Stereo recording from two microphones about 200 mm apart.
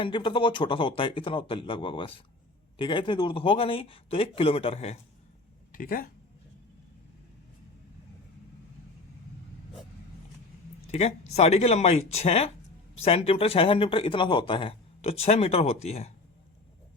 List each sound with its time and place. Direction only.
0.0 s speech: 25° left (ahead or behind)
5.7 s speech: 45° left (ahead or behind)
11.3 s speech: 30° left (ahead or behind)